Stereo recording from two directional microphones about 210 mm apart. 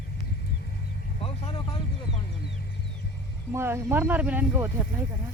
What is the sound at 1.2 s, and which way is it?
Speech, 25° left (ahead or behind).